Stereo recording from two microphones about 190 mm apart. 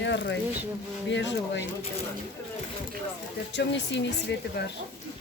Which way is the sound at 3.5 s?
70° left (ahead or behind).